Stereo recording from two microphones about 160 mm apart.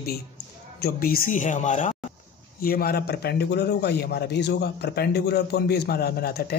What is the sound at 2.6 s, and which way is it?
A man's voice, 65° left (ahead or behind).